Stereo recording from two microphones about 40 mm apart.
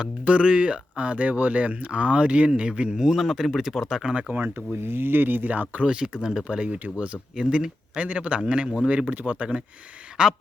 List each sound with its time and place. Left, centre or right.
0.3 s speech: right
4.1 s speech: right
4.4 s speech: right
6.1 s speech: centre
6.5 s speech: right
7.3 s speech: right
8.0 s speech: right
8.4 s speech: right
9.0 s speech: right
10.2 s speech: centre